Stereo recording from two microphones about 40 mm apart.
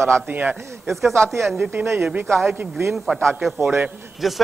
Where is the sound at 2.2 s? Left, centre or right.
Centre.